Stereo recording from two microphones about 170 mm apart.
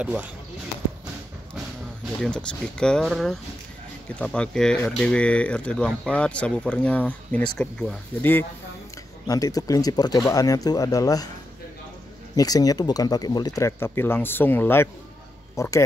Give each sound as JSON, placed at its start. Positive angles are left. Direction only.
{"t": 0.0, "sound": "speech", "side_deg": -10}
{"t": 2.2, "sound": "speech", "side_deg": 5}
{"t": 12.4, "sound": "speech", "side_deg": 20}